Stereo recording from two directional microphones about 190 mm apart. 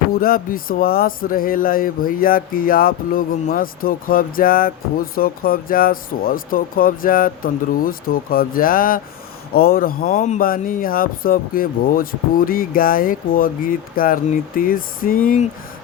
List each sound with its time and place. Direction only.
0.1 s speech: 50° left (ahead or behind)